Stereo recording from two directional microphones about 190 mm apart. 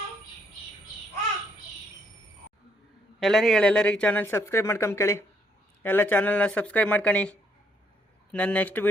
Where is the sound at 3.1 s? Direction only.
Centre (ahead or behind).